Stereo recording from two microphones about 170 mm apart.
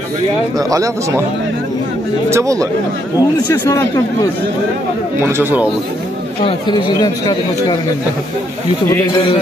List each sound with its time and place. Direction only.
0.6 s speech: 20° right (ahead or behind)
2.2 s speech: 15° right (ahead or behind)
3.2 s speech: 20° left (ahead or behind)
5.2 s speech: 10° right (ahead or behind)
6.4 s speech: 25° left (ahead or behind)